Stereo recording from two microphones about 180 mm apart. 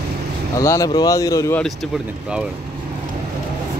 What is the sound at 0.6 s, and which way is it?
Speech, 20° left (ahead or behind).